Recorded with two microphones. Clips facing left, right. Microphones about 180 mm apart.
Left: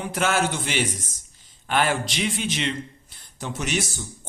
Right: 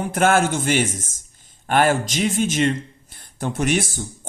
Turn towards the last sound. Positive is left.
turn(degrees=-50)  # may be behind; listen again after turning